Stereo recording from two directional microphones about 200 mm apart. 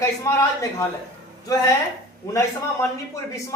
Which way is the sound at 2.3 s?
15° left (ahead or behind).